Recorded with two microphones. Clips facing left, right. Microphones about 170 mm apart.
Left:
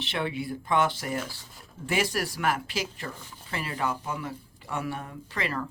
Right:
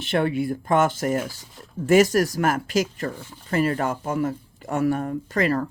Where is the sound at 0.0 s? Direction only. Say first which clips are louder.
Right 8 dB; 50° right (ahead or behind).